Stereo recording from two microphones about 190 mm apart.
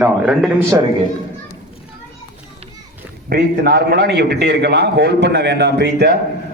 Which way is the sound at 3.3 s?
55° right (ahead or behind).